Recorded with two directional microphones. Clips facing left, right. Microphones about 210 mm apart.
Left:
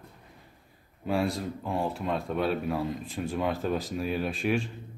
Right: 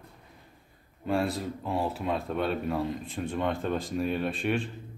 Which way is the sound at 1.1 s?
Centre (ahead or behind).